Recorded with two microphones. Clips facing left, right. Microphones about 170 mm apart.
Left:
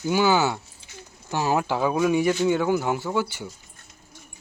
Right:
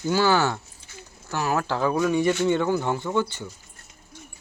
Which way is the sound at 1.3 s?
20° left (ahead or behind).